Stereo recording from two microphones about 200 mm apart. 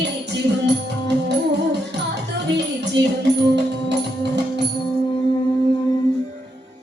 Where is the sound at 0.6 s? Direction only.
60° right (ahead or behind).